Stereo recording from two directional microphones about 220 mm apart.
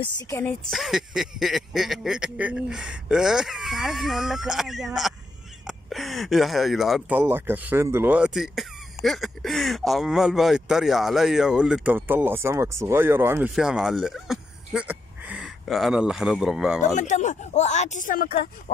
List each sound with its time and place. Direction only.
0.2 s speech: 15° left (ahead or behind)
16.8 s speech: 35° left (ahead or behind)